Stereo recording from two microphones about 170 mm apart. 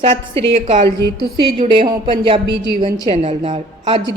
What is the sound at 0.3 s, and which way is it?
Speech, 45° right (ahead or behind).